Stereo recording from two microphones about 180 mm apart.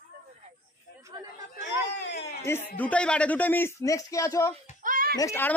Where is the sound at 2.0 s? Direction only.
70° left (ahead or behind).